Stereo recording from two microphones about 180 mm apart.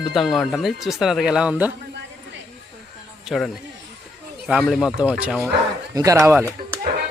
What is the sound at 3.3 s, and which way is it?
Speech, centre (ahead or behind).